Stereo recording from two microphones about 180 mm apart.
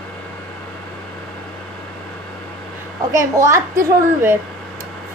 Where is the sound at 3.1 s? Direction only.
15° right (ahead or behind).